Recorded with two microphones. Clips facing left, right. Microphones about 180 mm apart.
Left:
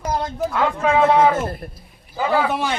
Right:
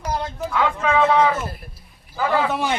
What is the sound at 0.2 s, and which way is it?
A man's voice, 40° left (ahead or behind).